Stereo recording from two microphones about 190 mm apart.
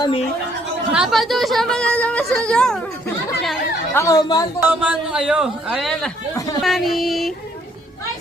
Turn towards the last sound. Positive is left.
turn(degrees=0)  # may be behind; listen again after turning